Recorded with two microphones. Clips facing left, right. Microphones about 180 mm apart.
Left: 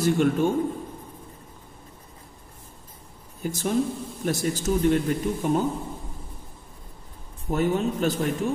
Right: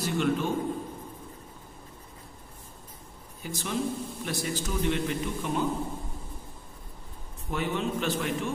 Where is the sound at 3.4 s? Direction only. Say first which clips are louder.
Left 7 dB; 45° left (ahead or behind).